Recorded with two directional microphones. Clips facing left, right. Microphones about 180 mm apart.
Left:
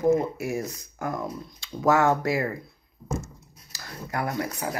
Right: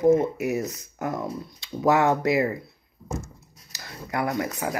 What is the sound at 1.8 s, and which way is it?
Speech, 20° right (ahead or behind).